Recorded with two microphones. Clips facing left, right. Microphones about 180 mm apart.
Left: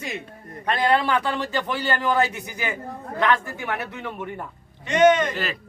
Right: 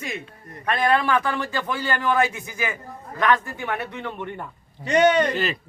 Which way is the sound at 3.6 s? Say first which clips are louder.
Right 1 dB; 5° left (ahead or behind).